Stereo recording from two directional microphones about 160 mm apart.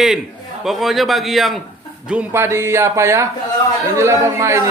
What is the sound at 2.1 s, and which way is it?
A man's voice, 10° right (ahead or behind).